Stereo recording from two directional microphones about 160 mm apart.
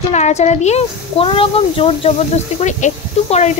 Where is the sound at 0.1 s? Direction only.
45° left (ahead or behind).